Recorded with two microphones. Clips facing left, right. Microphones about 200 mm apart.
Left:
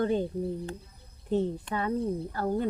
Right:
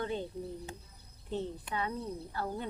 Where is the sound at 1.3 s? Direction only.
45° left (ahead or behind).